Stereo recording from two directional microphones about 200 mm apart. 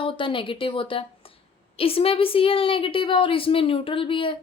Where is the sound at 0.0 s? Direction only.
25° left (ahead or behind).